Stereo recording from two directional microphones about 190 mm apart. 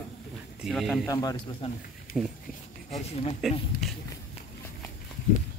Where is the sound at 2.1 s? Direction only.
50° left (ahead or behind).